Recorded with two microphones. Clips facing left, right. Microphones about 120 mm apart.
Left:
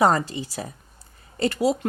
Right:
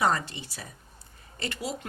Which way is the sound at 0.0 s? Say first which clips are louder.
Left 7 dB; 40° left (ahead or behind).